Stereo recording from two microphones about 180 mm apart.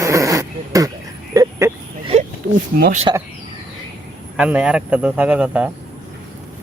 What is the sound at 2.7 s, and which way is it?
Speech, 55° right (ahead or behind).